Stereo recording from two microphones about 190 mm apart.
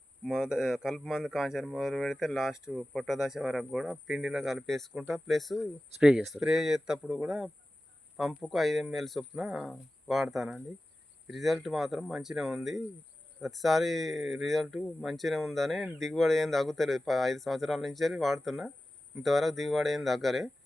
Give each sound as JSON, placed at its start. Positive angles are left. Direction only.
{"t": 0.3, "sound": "speech", "side_deg": -5}